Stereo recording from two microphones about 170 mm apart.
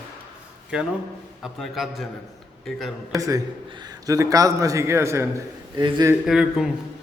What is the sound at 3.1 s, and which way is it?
A man's voice, 20° right (ahead or behind).